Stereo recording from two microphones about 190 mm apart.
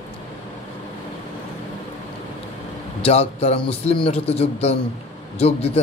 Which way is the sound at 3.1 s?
30° left (ahead or behind).